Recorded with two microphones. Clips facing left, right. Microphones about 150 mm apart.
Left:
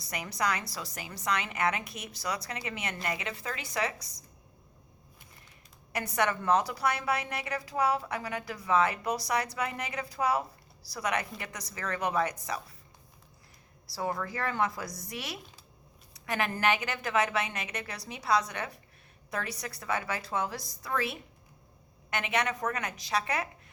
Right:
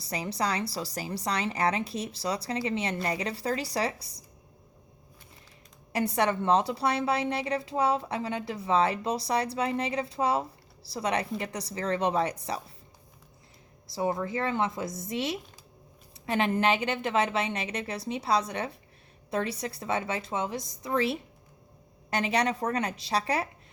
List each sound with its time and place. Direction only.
0.0 s a woman's voice: 30° right (ahead or behind)
5.9 s a woman's voice: 30° right (ahead or behind)
13.8 s a woman's voice: 20° right (ahead or behind)